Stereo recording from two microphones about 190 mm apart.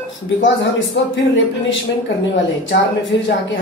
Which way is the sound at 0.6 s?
70° left (ahead or behind).